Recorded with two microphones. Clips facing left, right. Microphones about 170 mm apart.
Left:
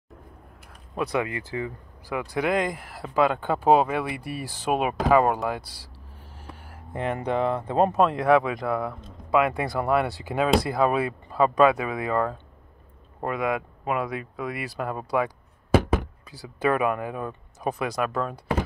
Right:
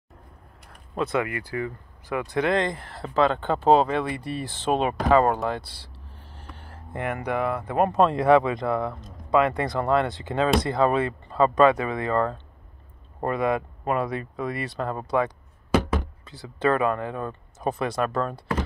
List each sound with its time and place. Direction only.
0.9 s speech: 15° left (ahead or behind)
6.3 s a sound: 5° left (ahead or behind); by 7.9 s 25° left (ahead or behind)
7.9 s speech: centre (ahead or behind)